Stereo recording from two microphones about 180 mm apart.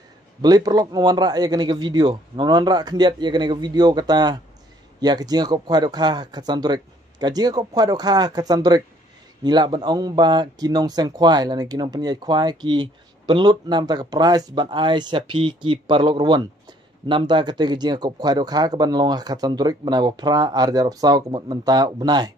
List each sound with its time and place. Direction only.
0.4 s speech: 20° right (ahead or behind)